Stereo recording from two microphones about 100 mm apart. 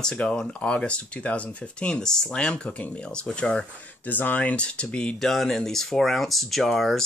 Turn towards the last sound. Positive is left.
turn(degrees=0)  # may be behind; listen again after turning